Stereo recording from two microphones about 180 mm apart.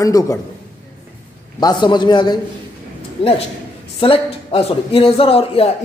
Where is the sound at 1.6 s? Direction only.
25° left (ahead or behind).